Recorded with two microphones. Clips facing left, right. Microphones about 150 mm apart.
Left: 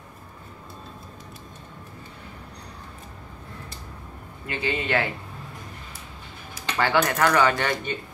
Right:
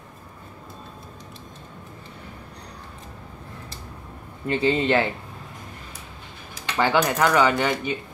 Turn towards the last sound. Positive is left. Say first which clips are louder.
# right 2 dB
turn(degrees=-15)  # may be behind; listen again after turning